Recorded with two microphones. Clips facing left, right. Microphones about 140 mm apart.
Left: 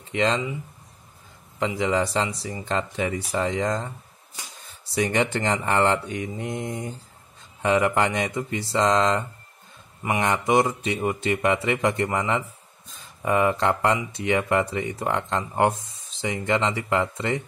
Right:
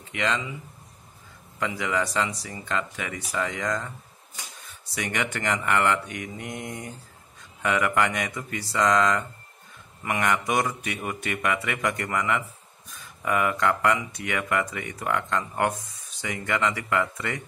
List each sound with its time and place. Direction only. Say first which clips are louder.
0.1 s speech: left 5 dB; 30° left (ahead or behind)
1.6 s speech: left 4 dB; 25° left (ahead or behind)
4.9 s speech: left 7 dB; 30° left (ahead or behind)